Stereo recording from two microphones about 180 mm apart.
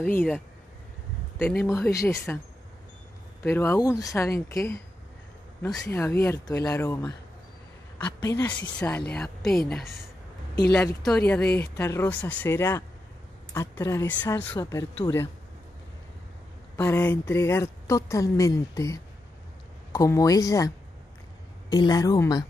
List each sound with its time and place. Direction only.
0.0 s a woman's voice: 10° left (ahead or behind)
1.4 s a woman's voice: 10° left (ahead or behind)
3.4 s a woman's voice: 10° left (ahead or behind)
8.2 s a woman's voice: 20° left (ahead or behind); by 9.6 s 5° left (ahead or behind)
11.1 s a woman's voice: 5° left (ahead or behind)
16.7 s a woman's voice: 15° left (ahead or behind)